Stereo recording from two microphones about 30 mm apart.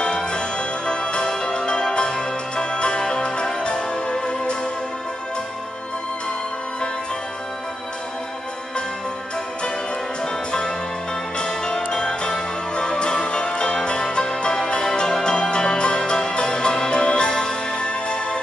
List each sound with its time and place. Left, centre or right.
0.0 s music: left
11.3 s music: left